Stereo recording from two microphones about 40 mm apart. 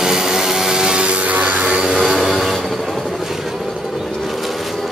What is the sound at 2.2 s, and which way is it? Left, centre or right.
Vehicle, centre.